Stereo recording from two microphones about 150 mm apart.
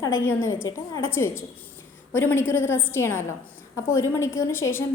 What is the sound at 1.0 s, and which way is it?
A woman's voice, 15° left (ahead or behind).